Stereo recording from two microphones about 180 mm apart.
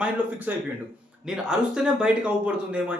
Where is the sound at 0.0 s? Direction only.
10° right (ahead or behind).